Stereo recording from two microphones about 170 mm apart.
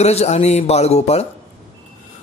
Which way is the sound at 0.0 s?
40° left (ahead or behind).